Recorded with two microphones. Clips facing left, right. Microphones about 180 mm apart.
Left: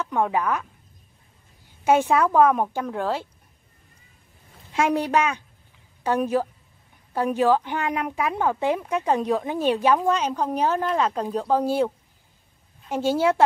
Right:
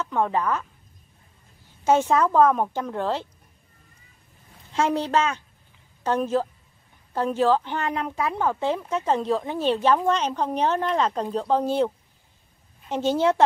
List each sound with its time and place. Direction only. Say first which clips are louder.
0.0 s speech: left 1 dB; 10° left (ahead or behind)
1.9 s speech: left 1 dB; 10° left (ahead or behind)
4.7 s speech: left 1 dB; 15° left (ahead or behind)